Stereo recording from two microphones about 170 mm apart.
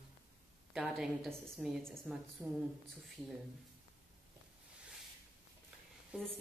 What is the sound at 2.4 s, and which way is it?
Speech, 15° right (ahead or behind).